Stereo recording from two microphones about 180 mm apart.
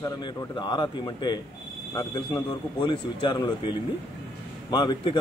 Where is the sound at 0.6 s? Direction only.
25° left (ahead or behind).